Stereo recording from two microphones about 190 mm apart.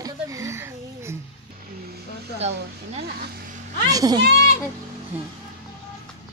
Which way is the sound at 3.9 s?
20° right (ahead or behind).